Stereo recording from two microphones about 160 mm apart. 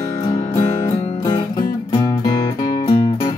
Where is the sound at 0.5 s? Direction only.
25° left (ahead or behind).